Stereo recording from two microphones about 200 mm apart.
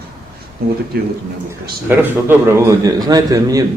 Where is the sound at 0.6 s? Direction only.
50° right (ahead or behind).